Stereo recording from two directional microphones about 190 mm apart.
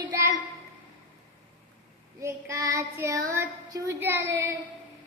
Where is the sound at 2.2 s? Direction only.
15° right (ahead or behind).